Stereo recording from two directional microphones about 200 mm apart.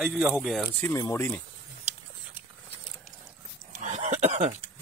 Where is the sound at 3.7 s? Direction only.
35° right (ahead or behind).